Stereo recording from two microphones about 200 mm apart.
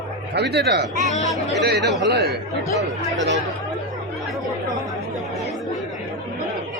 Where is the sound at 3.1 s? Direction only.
65° right (ahead or behind).